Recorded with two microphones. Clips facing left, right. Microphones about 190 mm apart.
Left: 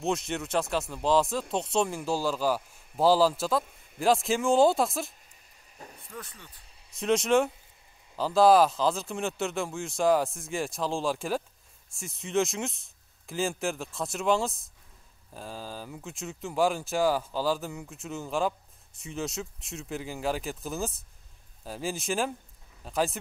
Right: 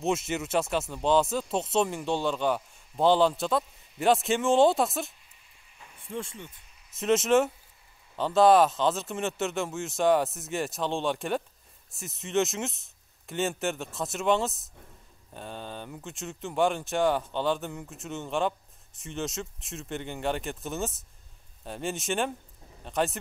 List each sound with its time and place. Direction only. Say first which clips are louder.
0.0 s speech: right 1 dB; 5° right (ahead or behind)
6.0 s speech: right 10 dB; 25° right (ahead or behind)
6.9 s speech: right 1 dB; centre (ahead or behind)